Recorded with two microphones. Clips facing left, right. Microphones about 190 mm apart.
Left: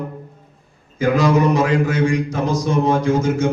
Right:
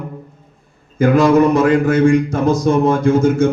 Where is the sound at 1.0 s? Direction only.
55° right (ahead or behind).